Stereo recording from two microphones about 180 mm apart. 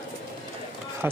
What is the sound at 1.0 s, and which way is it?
Speech, 10° right (ahead or behind).